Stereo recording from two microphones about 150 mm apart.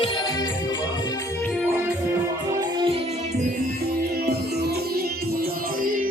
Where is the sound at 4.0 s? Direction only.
90° right.